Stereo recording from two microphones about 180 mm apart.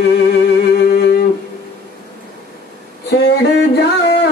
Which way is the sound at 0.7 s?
70° left (ahead or behind).